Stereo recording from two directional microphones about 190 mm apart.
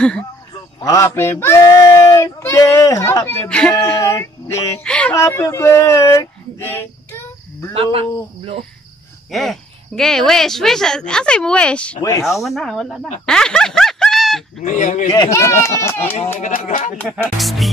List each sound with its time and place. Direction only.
0.7 s speech: 20° left (ahead or behind)
3.8 s child singing: 15° left (ahead or behind)
4.8 s speech: 5° left (ahead or behind)
5.1 s speech: 15° left (ahead or behind)
7.7 s speech: 30° right (ahead or behind)
9.3 s speech: centre (ahead or behind)
12.0 s speech: 15° left (ahead or behind)
12.4 s speech: centre (ahead or behind)
13.2 s snicker: 5° left (ahead or behind)
14.6 s speech: 40° left (ahead or behind)
15.1 s speech: 15° left (ahead or behind)
16.3 s speech: 40° left (ahead or behind)
17.1 s speech: centre (ahead or behind)